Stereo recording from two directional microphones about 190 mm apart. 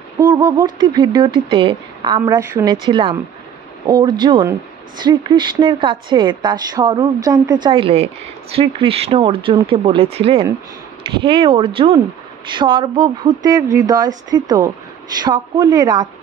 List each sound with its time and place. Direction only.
0.2 s speech: 20° right (ahead or behind)